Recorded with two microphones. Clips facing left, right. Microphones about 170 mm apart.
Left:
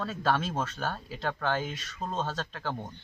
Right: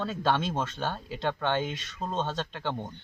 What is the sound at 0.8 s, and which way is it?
Speech, 25° right (ahead or behind).